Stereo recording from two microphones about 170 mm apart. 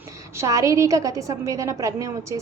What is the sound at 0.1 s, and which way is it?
A woman's voice, 20° right (ahead or behind).